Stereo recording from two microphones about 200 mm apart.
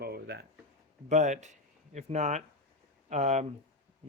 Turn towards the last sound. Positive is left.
turn(degrees=-35)  # may be behind; listen again after turning